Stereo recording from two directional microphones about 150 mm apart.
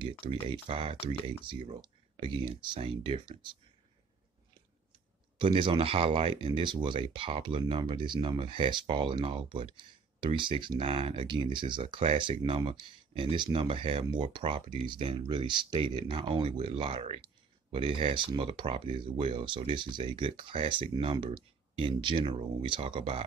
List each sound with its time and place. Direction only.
0.2 s speech: 35° right (ahead or behind)
5.4 s speech: 35° right (ahead or behind)